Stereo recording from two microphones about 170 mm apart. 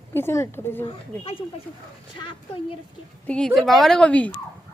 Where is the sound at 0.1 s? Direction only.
15° left (ahead or behind).